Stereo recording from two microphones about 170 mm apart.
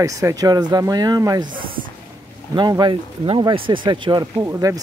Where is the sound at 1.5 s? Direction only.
55° right (ahead or behind).